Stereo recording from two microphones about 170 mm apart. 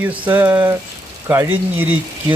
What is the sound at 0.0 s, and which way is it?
A man's voice, 10° right (ahead or behind).